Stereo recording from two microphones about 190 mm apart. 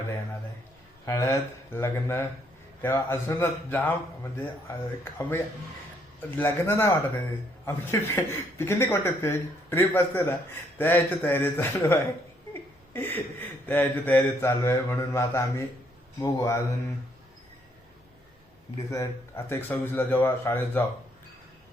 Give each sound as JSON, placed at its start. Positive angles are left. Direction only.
{"t": 1.0, "sound": "speech", "side_deg": 15}
{"t": 12.9, "sound": "a sound", "side_deg": 10}
{"t": 13.7, "sound": "speech", "side_deg": 10}
{"t": 18.9, "sound": "speech", "side_deg": 15}